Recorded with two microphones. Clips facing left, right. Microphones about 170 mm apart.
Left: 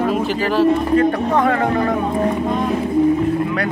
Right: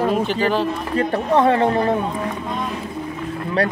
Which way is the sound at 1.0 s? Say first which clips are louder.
Left 2 dB; 25° right (ahead or behind).